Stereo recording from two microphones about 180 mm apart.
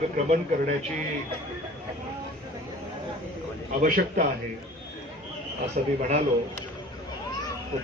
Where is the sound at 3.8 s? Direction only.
45° right (ahead or behind).